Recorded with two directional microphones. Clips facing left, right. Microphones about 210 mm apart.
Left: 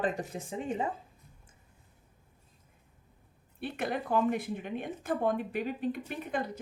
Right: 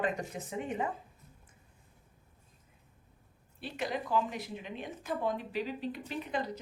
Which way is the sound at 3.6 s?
55° left (ahead or behind).